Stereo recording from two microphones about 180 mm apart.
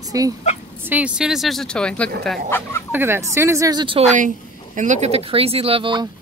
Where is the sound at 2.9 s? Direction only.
15° right (ahead or behind).